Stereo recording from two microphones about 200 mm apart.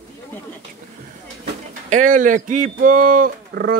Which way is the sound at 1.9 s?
40° right (ahead or behind).